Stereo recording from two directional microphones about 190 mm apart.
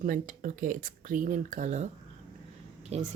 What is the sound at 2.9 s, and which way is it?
Speech, 35° right (ahead or behind).